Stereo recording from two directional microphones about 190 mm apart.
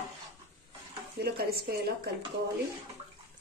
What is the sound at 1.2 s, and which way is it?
Speech, 55° right (ahead or behind).